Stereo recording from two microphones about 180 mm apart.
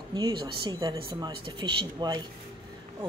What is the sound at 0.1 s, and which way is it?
Speech, 25° right (ahead or behind).